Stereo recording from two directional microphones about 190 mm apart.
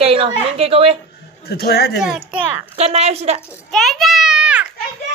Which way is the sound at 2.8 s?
35° right (ahead or behind).